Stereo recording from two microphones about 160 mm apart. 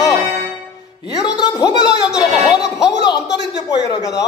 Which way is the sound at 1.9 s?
5° right (ahead or behind).